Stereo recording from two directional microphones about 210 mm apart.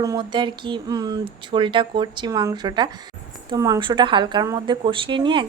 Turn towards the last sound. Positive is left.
turn(degrees=-25)  # may be behind; listen again after turning